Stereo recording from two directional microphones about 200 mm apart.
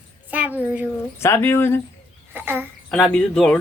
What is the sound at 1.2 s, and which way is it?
Speech, 15° left (ahead or behind).